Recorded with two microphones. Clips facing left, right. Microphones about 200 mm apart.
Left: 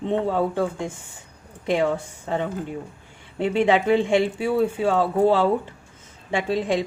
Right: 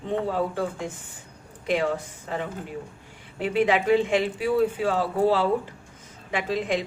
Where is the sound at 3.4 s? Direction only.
25° left (ahead or behind).